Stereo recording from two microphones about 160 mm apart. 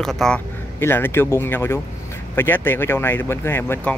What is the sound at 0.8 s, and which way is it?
Speech, 15° left (ahead or behind).